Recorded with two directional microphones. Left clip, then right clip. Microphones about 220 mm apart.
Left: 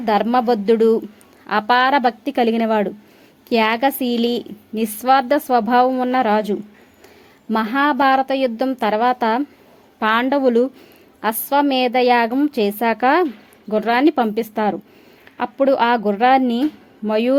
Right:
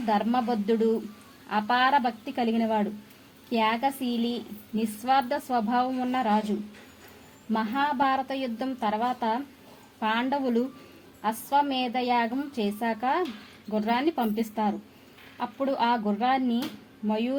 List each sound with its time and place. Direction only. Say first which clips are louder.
0.0 s a woman's voice: left 9 dB; 45° left (ahead or behind)
7.5 s a woman's voice: left 9 dB; 50° left (ahead or behind)